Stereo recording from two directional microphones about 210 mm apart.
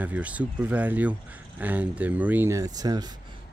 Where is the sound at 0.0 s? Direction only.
5° right (ahead or behind).